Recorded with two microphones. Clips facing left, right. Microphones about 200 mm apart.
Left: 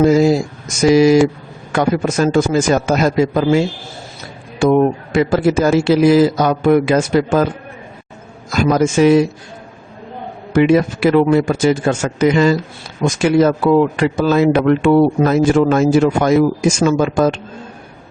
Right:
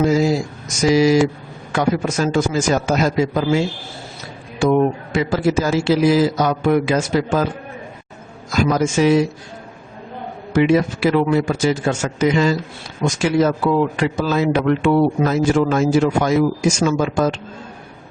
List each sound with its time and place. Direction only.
0.1 s a man's voice: 55° left (ahead or behind)
4.6 s a man's voice: 55° left (ahead or behind)
8.5 s a man's voice: 50° left (ahead or behind)
10.5 s a man's voice: 55° left (ahead or behind)
13.9 s a man's voice: 55° left (ahead or behind)